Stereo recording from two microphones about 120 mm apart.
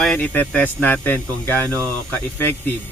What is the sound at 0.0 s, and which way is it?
Speech, 10° left (ahead or behind).